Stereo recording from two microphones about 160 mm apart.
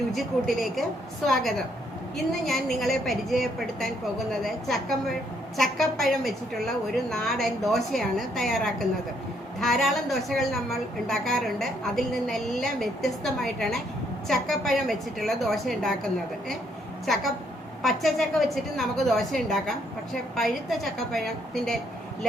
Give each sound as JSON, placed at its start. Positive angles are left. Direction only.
{"t": 0.1, "sound": "a woman's voice", "side_deg": 0}
{"t": 17.8, "sound": "a woman's voice", "side_deg": 0}